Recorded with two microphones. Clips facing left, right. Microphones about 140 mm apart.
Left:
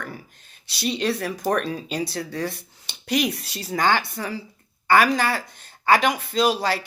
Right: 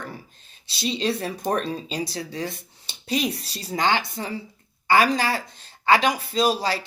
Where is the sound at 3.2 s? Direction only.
30° right (ahead or behind).